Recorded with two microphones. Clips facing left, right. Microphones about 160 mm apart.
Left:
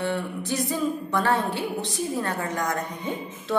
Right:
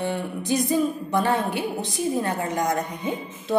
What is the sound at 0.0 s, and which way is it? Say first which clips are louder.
A woman's voice: right 1 dB; 15° right (ahead or behind).